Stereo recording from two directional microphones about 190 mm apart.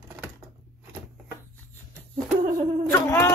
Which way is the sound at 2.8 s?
15° left (ahead or behind).